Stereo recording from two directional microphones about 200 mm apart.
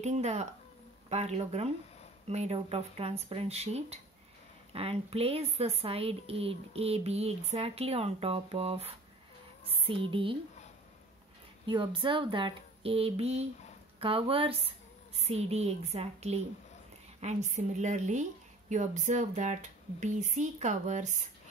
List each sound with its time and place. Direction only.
0.0 s a woman's voice: 35° right (ahead or behind)
11.6 s a woman's voice: 25° right (ahead or behind)